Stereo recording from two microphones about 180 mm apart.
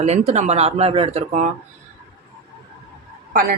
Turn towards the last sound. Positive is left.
turn(degrees=-55)  # may be behind; listen again after turning